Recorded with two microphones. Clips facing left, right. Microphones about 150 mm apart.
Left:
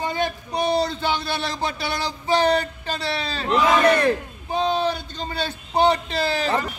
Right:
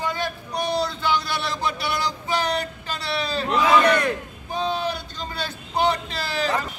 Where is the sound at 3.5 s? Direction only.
30° left (ahead or behind).